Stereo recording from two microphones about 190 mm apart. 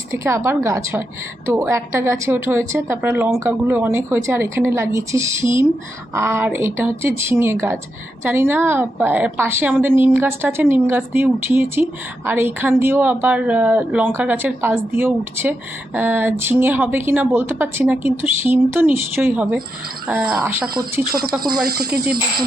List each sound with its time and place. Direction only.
0.1 s a woman's voice: 15° right (ahead or behind)
21.4 s speech: 20° right (ahead or behind)
21.9 s speech: 50° right (ahead or behind)